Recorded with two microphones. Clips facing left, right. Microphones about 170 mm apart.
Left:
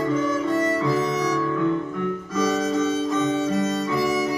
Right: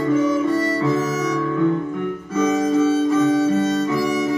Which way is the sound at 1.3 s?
15° right (ahead or behind).